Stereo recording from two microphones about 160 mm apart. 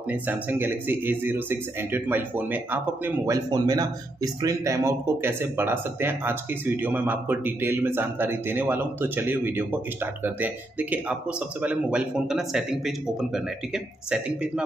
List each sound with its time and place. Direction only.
0.1 s speech: 10° right (ahead or behind)